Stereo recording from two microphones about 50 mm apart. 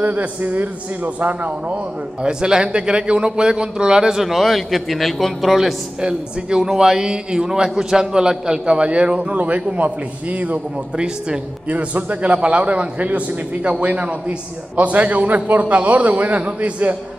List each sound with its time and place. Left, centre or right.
0.0 s a man's voice: right
2.2 s a man's voice: centre
5.9 s a man's voice: centre; by 16.9 s right